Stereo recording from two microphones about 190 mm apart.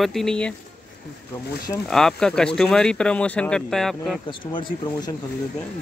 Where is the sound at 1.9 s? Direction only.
5° left (ahead or behind).